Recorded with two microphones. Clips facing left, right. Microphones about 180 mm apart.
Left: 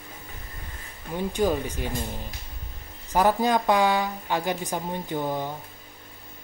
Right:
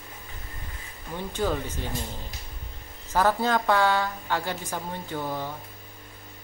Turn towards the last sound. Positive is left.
turn(degrees=15)  # may be behind; listen again after turning